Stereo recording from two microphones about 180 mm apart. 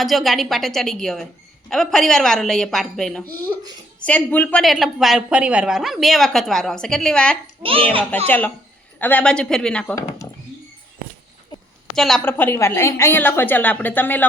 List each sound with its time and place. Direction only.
0.0 s a woman's voice: centre (ahead or behind)
7.6 s a child's voice: 30° right (ahead or behind)
8.3 s a woman's voice: 10° left (ahead or behind)
11.9 s a woman's voice: centre (ahead or behind)